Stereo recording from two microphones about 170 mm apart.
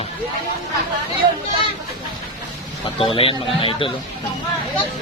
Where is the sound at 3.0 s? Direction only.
35° left (ahead or behind).